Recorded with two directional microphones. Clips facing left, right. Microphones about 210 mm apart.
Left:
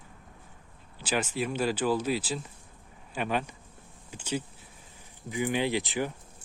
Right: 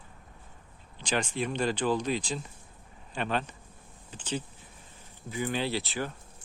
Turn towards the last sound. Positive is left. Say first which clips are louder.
# left 3 dB
turn(degrees=15)  # may be behind; listen again after turning